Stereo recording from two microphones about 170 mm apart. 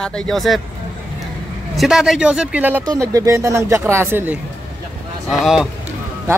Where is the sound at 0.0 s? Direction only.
Centre (ahead or behind).